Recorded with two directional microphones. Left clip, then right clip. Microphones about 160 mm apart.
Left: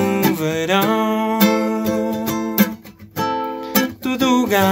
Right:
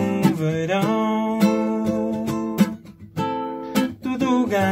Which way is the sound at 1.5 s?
20° left (ahead or behind).